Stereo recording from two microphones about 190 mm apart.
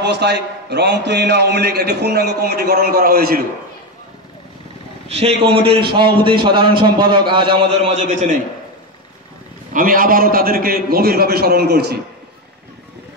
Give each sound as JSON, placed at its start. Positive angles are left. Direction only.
{"t": 0.0, "sound": "a man's voice", "side_deg": -65}
{"t": 5.0, "sound": "a man's voice", "side_deg": -30}
{"t": 9.7, "sound": "a man's voice", "side_deg": -45}